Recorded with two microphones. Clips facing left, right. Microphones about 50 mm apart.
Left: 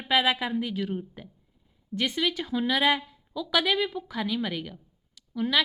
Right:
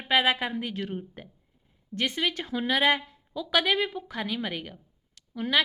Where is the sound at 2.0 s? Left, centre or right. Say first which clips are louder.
Left 1 dB; right.